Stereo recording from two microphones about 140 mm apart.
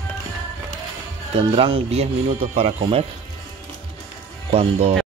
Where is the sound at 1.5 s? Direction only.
40° right (ahead or behind).